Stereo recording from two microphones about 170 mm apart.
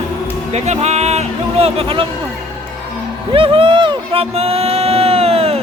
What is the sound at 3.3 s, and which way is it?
Speech, 30° right (ahead or behind).